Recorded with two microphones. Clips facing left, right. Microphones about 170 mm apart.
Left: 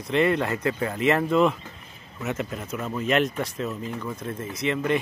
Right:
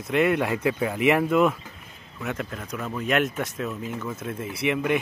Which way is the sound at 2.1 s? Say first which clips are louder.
Left 2 dB; 5° left (ahead or behind).